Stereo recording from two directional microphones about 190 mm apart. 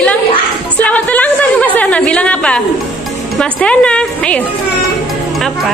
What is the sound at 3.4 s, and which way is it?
A woman's voice, 5° left (ahead or behind).